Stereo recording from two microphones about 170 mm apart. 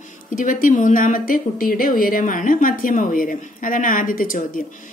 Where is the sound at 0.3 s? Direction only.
50° left (ahead or behind).